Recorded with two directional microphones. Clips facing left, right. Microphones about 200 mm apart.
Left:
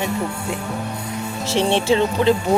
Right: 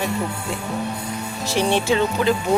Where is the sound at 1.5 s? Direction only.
25° left (ahead or behind).